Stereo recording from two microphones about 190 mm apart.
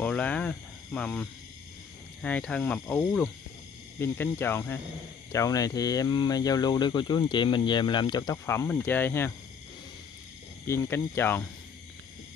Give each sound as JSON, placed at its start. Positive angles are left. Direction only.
{"t": 0.0, "sound": "cricket", "side_deg": 10}
{"t": 2.2, "sound": "speech", "side_deg": 5}
{"t": 10.7, "sound": "speech", "side_deg": 15}